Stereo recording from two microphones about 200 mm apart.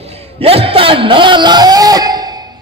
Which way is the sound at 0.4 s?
30° right (ahead or behind).